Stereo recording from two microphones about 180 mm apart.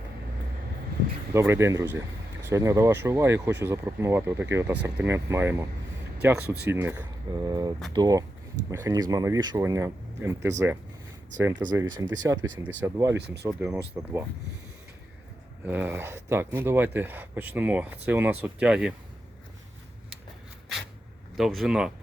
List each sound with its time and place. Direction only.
1.3 s speech: 15° right (ahead or behind)
6.4 s speech: 60° right (ahead or behind)
6.7 s speech: 10° right (ahead or behind)
7.4 s speech: 20° right (ahead or behind)
13.1 s speech: 65° right (ahead or behind)
13.6 s speech: 10° right (ahead or behind)
15.6 s speech: 10° right (ahead or behind)
21.3 s speech: centre (ahead or behind)